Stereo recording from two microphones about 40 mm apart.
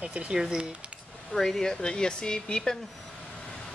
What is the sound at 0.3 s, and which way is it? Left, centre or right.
Speech, centre.